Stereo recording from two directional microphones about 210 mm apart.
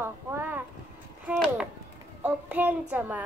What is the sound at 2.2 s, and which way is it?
Child singing, 10° right (ahead or behind).